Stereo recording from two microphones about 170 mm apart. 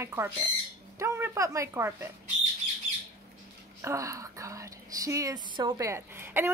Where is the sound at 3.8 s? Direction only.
20° right (ahead or behind).